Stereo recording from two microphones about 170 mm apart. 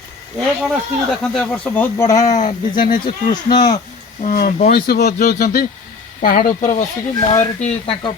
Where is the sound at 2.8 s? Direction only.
55° left (ahead or behind).